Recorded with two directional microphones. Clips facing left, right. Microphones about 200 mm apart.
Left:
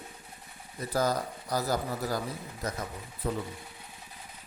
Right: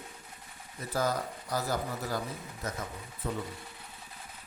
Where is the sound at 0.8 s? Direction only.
35° left (ahead or behind).